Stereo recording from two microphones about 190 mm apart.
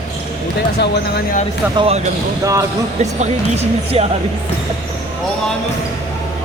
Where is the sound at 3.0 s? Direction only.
35° right (ahead or behind).